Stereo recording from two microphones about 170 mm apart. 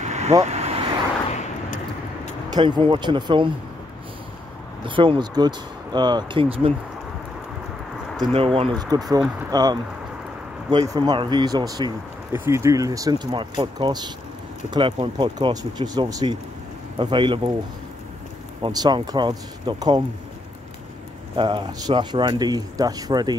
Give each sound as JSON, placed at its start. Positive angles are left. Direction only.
{"t": 0.0, "sound": "vehicle", "side_deg": -40}
{"t": 2.5, "sound": "speech", "side_deg": -30}
{"t": 4.8, "sound": "speech", "side_deg": -30}
{"t": 8.2, "sound": "speech", "side_deg": -35}
{"t": 8.9, "sound": "speech", "side_deg": -25}
{"t": 18.6, "sound": "speech", "side_deg": -25}
{"t": 21.4, "sound": "speech", "side_deg": -30}